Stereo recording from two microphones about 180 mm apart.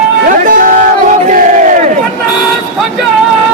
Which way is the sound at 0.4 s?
50° right (ahead or behind).